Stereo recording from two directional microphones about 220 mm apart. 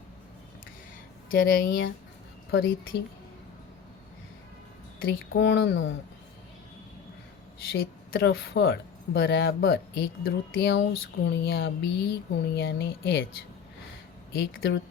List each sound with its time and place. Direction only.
1.3 s speech: 40° left (ahead or behind)
2.5 s speech: 55° left (ahead or behind)
4.9 s speech: 40° left (ahead or behind)
5.4 s speech: 55° left (ahead or behind)
7.8 s speech: 45° left (ahead or behind)
14.4 s speech: 55° left (ahead or behind)